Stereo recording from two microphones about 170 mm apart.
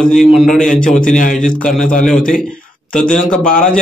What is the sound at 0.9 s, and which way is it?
A man's voice, 5° left (ahead or behind).